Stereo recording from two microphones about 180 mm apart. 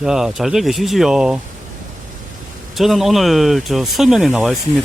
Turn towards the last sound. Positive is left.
turn(degrees=0)  # may be behind; listen again after turning